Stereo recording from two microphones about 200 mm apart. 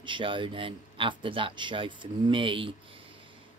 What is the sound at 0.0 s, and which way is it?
Speech, 25° right (ahead or behind).